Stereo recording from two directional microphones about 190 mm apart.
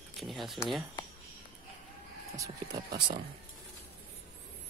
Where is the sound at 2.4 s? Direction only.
20° right (ahead or behind).